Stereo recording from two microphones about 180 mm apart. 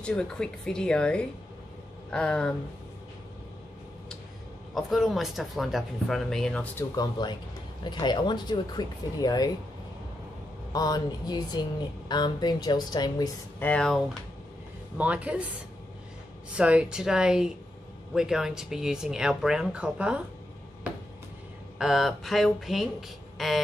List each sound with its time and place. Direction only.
0.0 s speech: 5° left (ahead or behind)
4.7 s speech: centre (ahead or behind)
7.0 s speech: 25° left (ahead or behind)
10.7 s speech: 20° left (ahead or behind)
13.6 s speech: 5° left (ahead or behind)
15.0 s speech: 5° right (ahead or behind)
16.5 s speech: 5° right (ahead or behind)
21.7 s speech: centre (ahead or behind)